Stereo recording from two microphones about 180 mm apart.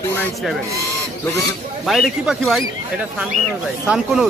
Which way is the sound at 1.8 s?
Centre (ahead or behind).